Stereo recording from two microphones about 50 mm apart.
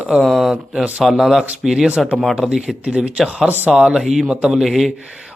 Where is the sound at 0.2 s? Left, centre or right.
Centre.